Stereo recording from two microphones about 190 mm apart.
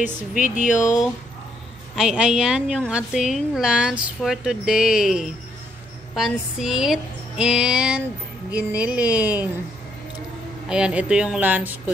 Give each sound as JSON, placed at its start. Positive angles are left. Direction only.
{"t": 0.6, "sound": "speech", "side_deg": 40}
{"t": 2.0, "sound": "a woman's voice", "side_deg": -5}
{"t": 10.7, "sound": "speech", "side_deg": -5}